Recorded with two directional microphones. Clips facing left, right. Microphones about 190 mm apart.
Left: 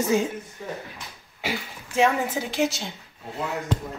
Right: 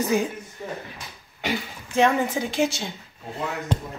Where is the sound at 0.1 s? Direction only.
25° left (ahead or behind).